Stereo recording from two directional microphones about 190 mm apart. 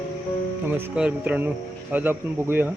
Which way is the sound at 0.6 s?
10° right (ahead or behind).